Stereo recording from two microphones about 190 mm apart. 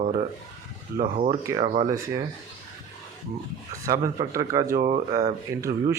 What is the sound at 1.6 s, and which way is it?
Speech, 35° right (ahead or behind).